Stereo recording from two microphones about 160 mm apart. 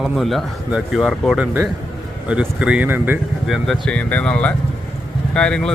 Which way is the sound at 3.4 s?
Centre (ahead or behind).